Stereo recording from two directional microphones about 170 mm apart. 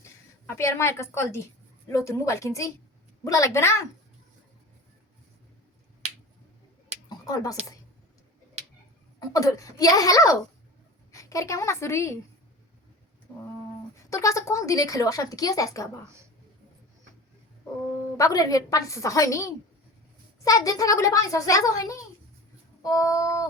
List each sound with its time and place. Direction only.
0.0 s a sound: 15° left (ahead or behind)
1.1 s a woman's voice: 15° left (ahead or behind)
7.1 s a sound: 20° left (ahead or behind)
9.3 s a woman's voice: 20° left (ahead or behind)
14.1 s speech: 20° left (ahead or behind)
18.2 s speech: 20° left (ahead or behind)